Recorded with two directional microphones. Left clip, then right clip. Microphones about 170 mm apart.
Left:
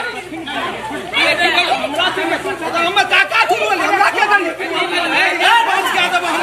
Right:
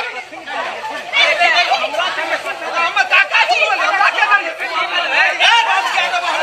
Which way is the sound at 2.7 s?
30° right (ahead or behind).